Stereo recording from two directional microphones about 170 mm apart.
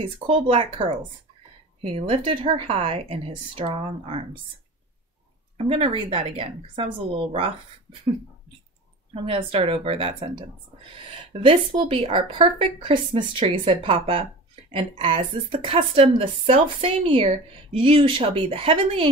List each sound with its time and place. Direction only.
0.0 s a woman's voice: 35° right (ahead or behind)
5.7 s a woman's voice: 35° right (ahead or behind)
9.1 s a woman's voice: 35° right (ahead or behind)
11.3 s a woman's voice: 30° right (ahead or behind)